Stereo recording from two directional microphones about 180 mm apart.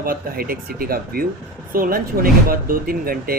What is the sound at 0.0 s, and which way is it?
Speech, 55° right (ahead or behind).